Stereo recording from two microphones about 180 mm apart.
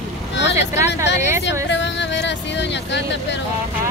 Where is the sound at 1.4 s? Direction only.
80° left.